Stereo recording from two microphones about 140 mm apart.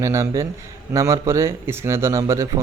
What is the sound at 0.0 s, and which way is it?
Speech, 20° right (ahead or behind).